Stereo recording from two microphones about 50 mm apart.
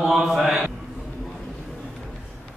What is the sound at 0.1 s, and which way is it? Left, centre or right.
Mantra, centre.